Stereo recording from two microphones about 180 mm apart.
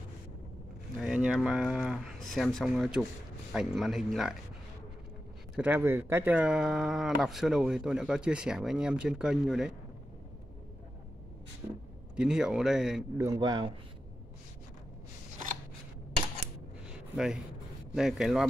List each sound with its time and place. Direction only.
0.9 s speech: 5° right (ahead or behind)
5.6 s speech: 10° right (ahead or behind)
12.2 s speech: 5° right (ahead or behind)
13.2 s speech: 20° right (ahead or behind)
17.9 s speech: 5° right (ahead or behind)